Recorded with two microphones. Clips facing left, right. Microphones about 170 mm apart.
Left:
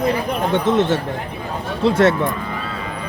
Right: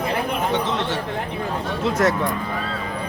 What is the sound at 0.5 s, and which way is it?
Speech, 50° left (ahead or behind).